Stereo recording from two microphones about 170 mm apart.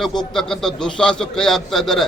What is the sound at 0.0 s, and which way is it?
A man's voice, 5° left (ahead or behind).